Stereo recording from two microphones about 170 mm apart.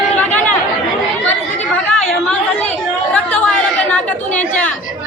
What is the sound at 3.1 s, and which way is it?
Chatter, 5° left (ahead or behind).